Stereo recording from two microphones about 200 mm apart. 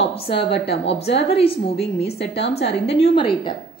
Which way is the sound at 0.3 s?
55° left (ahead or behind).